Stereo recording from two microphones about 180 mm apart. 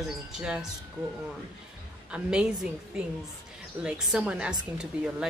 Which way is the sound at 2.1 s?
5° right (ahead or behind).